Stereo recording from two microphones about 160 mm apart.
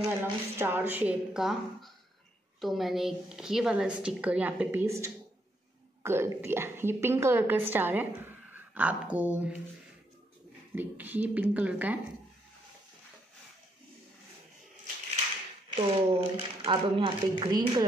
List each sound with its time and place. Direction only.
0.6 s a woman's voice: 10° right (ahead or behind)
10.7 s a woman's voice: 10° right (ahead or behind)
15.7 s speech: 35° right (ahead or behind)